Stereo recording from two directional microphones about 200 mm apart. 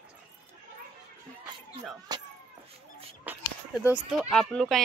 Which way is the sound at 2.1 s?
20° right (ahead or behind).